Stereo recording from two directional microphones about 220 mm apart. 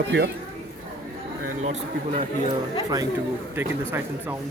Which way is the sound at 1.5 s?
30° right (ahead or behind).